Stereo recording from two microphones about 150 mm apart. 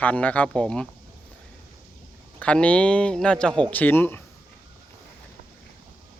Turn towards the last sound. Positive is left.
turn(degrees=15)  # may be behind; listen again after turning